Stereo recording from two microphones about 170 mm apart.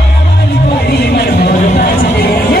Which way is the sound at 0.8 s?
70° left (ahead or behind).